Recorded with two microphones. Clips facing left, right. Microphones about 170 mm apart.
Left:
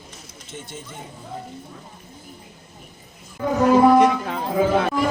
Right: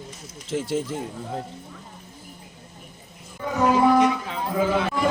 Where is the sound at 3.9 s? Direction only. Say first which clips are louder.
Left 3 dB; 55° left (ahead or behind).